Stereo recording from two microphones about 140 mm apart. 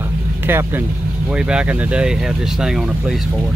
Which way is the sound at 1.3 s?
5° right (ahead or behind).